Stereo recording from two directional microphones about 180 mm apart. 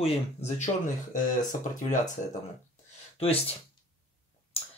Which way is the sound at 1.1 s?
50° left (ahead or behind).